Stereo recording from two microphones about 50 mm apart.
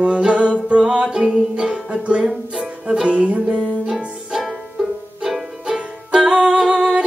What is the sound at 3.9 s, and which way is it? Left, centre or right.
Music, centre.